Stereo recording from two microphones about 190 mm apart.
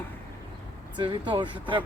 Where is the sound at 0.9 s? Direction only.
25° right (ahead or behind).